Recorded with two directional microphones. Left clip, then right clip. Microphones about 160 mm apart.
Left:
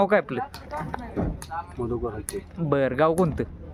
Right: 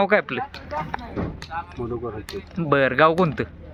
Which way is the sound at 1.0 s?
90° left.